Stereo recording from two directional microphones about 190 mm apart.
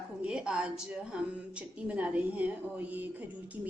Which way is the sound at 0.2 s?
5° right (ahead or behind).